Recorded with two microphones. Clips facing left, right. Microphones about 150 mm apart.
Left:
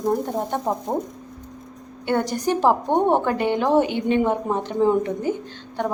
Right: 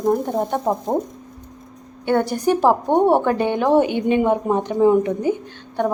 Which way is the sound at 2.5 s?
15° right (ahead or behind).